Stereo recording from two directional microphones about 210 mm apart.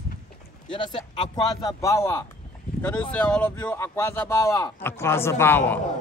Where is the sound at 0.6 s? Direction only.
25° left (ahead or behind).